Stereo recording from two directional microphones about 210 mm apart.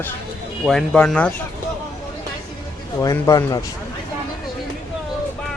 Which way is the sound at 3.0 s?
15° left (ahead or behind).